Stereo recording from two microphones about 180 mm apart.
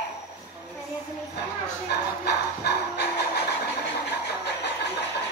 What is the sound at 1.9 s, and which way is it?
Music, 65° left (ahead or behind).